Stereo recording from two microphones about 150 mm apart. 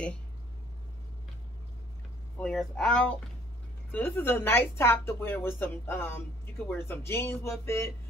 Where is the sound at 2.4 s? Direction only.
5° left (ahead or behind).